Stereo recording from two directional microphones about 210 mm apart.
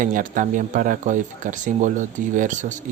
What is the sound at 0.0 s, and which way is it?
Speech, 40° right (ahead or behind).